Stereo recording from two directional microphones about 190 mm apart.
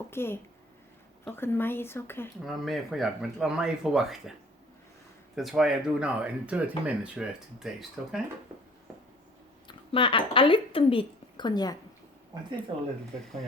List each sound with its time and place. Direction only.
0.1 s speech: 10° left (ahead or behind)
2.4 s speech: centre (ahead or behind)
5.4 s speech: centre (ahead or behind)
9.6 s speech: 25° left (ahead or behind)